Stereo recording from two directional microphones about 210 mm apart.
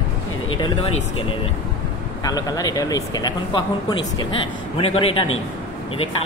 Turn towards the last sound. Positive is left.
turn(degrees=25)  # may be behind; listen again after turning